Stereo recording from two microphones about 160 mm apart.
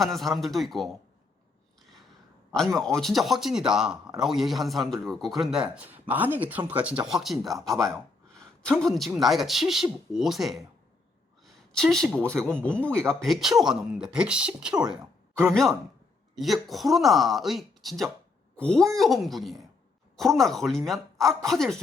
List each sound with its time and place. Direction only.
0.0 s a man's voice: centre (ahead or behind)
2.5 s a man's voice: 5° left (ahead or behind)
11.4 s a sound: 5° left (ahead or behind)
12.3 s speech: 15° right (ahead or behind)
12.5 s a man's voice: 5° left (ahead or behind)
16.3 s a man's voice: centre (ahead or behind)